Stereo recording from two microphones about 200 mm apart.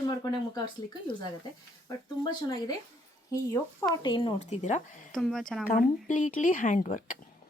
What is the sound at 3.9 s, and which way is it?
Speech, 20° left (ahead or behind).